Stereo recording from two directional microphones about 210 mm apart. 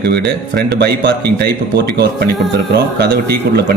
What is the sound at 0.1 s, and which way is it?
A man's voice, 50° right (ahead or behind).